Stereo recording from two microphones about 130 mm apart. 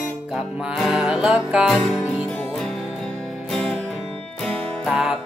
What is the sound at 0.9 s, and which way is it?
Music, 5° right (ahead or behind).